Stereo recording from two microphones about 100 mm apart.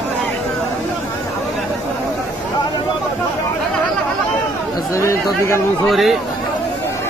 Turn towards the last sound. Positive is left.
turn(degrees=0)  # may be behind; listen again after turning